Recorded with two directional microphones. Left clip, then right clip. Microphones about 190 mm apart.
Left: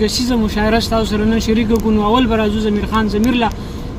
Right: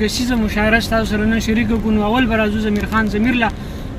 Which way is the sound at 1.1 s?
45° right (ahead or behind).